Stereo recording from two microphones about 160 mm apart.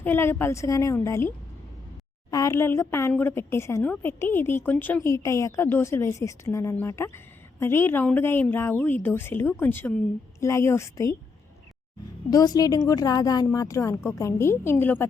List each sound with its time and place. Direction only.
0.0 s a woman's voice: 15° left (ahead or behind)
2.3 s a woman's voice: 20° left (ahead or behind)
12.3 s a woman's voice: 25° left (ahead or behind)